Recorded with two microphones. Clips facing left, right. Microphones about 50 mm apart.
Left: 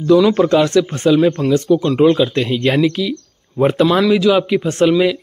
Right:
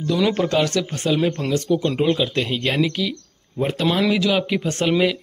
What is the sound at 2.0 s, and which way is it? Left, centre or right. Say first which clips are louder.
Speech: left 7 dB; centre.